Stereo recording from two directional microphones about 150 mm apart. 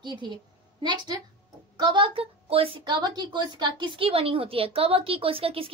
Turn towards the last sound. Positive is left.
turn(degrees=-40)  # may be behind; listen again after turning